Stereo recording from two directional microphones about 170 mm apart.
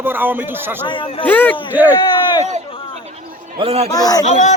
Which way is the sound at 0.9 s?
30° left (ahead or behind).